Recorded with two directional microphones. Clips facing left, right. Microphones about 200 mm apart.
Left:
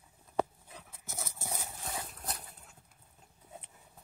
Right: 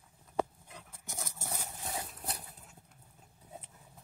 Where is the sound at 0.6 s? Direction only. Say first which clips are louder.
Even; 5° left (ahead or behind).